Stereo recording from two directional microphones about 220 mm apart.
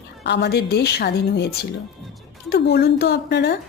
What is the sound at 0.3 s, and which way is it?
A woman's voice, 50° left (ahead or behind).